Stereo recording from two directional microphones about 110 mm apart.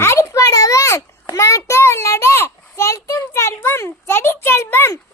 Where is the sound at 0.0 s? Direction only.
25° left (ahead or behind).